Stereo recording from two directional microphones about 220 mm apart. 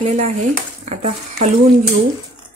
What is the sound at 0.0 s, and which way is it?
Speech, 30° right (ahead or behind).